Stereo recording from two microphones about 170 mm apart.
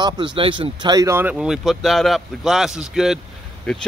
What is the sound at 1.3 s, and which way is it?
Speech, 5° right (ahead or behind).